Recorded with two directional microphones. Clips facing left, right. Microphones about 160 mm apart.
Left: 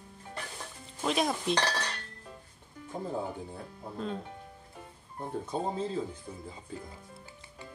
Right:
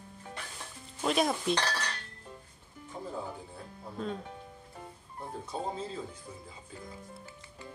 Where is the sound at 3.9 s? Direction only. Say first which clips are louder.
Even; centre (ahead or behind).